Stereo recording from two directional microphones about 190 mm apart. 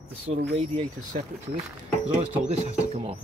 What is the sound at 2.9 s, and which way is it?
Speech, 30° right (ahead or behind).